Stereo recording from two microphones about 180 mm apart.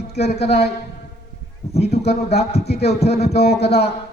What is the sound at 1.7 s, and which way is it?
Speech, 65° left (ahead or behind).